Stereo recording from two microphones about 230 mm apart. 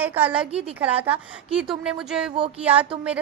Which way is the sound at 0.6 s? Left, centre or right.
Centre.